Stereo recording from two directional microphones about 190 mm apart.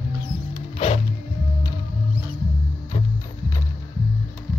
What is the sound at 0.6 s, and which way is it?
Music, 30° left (ahead or behind).